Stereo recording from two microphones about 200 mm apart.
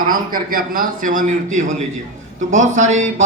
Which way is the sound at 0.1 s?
45° right (ahead or behind).